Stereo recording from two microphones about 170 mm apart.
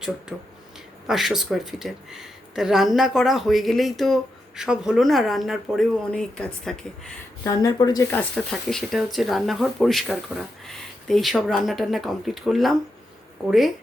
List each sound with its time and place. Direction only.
0.3 s speech: 5° right (ahead or behind)
7.4 s speech: 25° left (ahead or behind)
8.1 s speech: 5° left (ahead or behind)